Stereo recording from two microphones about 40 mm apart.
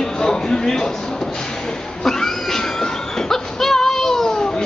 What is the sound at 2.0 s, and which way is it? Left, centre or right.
Cat, centre.